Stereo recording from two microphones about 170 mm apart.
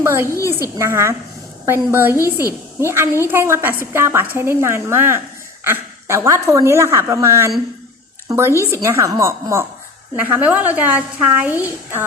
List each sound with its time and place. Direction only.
0.0 s a woman's voice: 15° right (ahead or behind)